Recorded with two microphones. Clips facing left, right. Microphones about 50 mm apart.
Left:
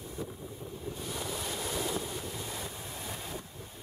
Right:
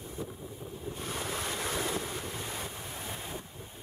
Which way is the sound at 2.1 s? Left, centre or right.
Right.